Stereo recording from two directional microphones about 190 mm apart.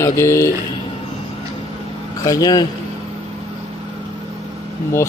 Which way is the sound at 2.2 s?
20° left (ahead or behind).